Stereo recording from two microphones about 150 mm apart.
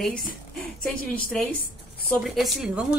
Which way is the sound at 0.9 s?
75° left (ahead or behind).